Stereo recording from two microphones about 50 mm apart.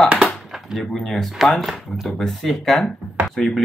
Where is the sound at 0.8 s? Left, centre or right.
Centre.